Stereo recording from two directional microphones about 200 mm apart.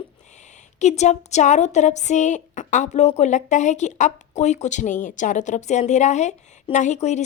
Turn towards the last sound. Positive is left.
turn(degrees=35)  # may be behind; listen again after turning